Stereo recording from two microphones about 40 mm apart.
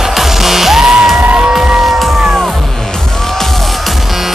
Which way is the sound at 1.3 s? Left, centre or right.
Centre.